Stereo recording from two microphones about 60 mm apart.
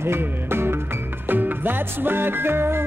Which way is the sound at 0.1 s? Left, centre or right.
Right.